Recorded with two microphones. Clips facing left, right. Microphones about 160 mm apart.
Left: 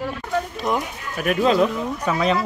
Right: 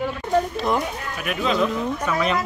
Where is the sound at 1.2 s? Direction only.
45° left (ahead or behind).